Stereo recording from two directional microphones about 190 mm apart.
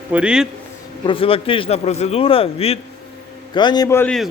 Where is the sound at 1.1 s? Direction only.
30° left (ahead or behind).